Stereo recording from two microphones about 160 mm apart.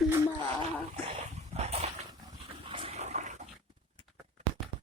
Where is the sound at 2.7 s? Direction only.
35° right (ahead or behind).